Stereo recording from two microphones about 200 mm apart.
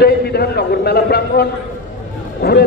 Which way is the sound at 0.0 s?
55° left (ahead or behind).